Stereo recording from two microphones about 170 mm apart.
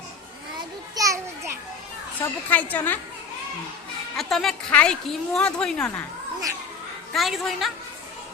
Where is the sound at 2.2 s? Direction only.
10° left (ahead or behind).